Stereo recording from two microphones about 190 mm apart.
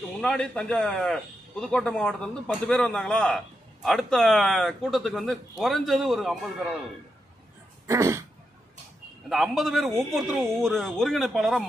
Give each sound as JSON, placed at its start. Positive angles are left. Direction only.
{"t": 0.2, "sound": "a man's voice", "side_deg": 5}
{"t": 7.8, "sound": "throat clearing", "side_deg": -15}
{"t": 9.3, "sound": "a man's voice", "side_deg": 0}